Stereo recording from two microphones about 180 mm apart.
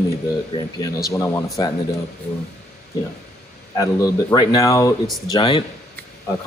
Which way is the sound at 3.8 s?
20° left (ahead or behind).